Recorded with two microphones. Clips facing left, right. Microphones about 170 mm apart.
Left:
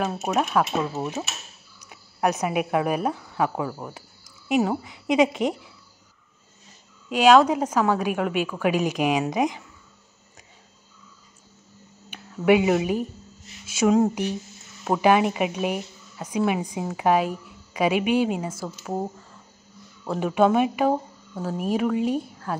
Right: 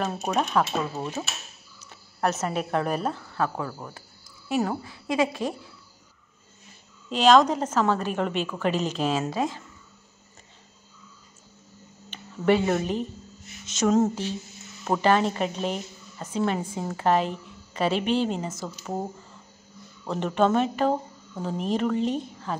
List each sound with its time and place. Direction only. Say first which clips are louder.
0.0 s a woman's voice: left 2 dB; 5° left (ahead or behind)
7.1 s a woman's voice: left 2 dB; 10° left (ahead or behind)
12.1 s a woman's voice: left 3 dB; 10° left (ahead or behind)
20.1 s a woman's voice: left 3 dB; 5° left (ahead or behind)